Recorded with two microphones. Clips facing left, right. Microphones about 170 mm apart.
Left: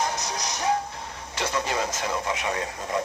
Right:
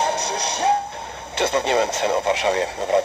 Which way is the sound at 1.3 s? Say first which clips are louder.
Right 8 dB; 65° right (ahead or behind).